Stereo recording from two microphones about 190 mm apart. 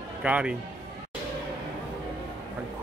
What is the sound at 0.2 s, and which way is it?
Speech, 5° right (ahead or behind).